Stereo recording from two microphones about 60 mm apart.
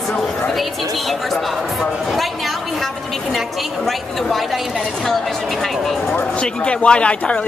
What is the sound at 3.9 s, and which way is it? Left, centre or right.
Speech, centre.